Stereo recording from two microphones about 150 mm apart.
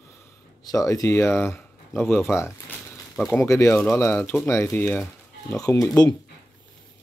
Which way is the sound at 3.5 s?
20° left (ahead or behind).